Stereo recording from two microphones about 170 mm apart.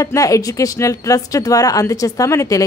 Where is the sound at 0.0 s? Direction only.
20° left (ahead or behind).